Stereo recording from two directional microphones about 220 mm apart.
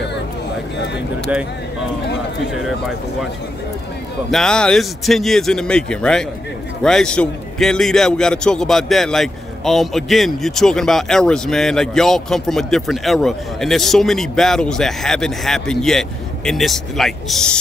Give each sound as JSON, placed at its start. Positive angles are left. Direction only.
{"t": 4.3, "sound": "a man's voice", "side_deg": 0}